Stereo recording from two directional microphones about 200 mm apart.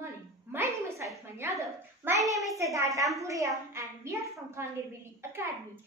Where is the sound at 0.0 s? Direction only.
10° right (ahead or behind).